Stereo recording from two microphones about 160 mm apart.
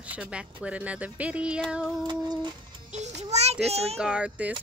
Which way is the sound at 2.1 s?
30° right (ahead or behind).